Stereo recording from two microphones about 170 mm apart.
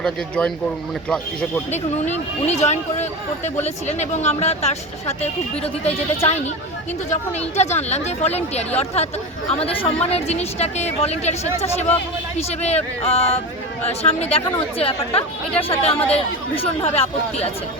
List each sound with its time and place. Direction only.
0.0 s speech: 5° left (ahead or behind)
1.7 s speech: 40° left (ahead or behind)
12.4 s speech: 40° left (ahead or behind)